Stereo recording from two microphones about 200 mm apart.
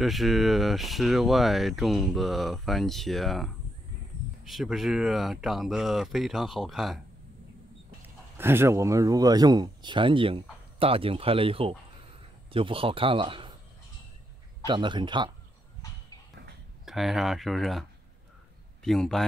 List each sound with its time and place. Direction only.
0.0 s speech: centre (ahead or behind)
8.4 s speech: 10° right (ahead or behind)
14.7 s speech: 25° right (ahead or behind)
16.8 s speech: centre (ahead or behind)
18.9 s speech: centre (ahead or behind)